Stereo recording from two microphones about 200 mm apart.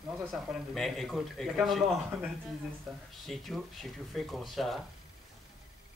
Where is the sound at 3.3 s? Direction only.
Centre (ahead or behind).